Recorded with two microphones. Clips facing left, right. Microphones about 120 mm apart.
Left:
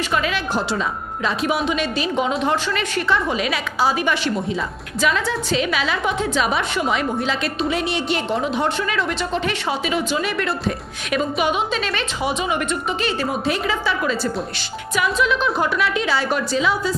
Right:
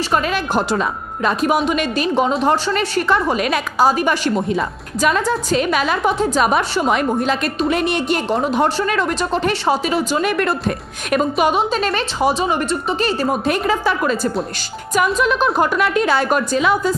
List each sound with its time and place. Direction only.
0.1 s a woman's voice: 45° right (ahead or behind)
3.1 s a woman's voice: 50° right (ahead or behind)